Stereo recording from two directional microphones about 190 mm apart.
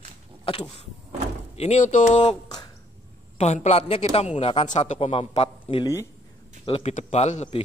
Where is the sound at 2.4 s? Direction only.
20° left (ahead or behind).